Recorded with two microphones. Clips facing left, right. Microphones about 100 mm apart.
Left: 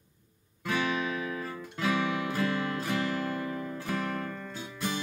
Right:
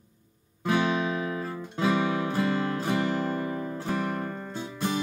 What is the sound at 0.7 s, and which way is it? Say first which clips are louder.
Guitar: right 5 dB; 25° right (ahead or behind).